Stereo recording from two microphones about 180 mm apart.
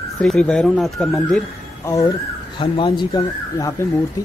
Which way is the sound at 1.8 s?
20° left (ahead or behind).